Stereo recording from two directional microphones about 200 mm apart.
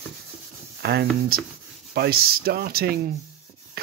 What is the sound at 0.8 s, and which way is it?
Speech, 50° right (ahead or behind).